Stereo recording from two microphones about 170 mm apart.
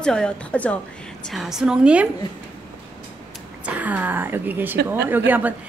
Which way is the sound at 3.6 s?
10° right (ahead or behind).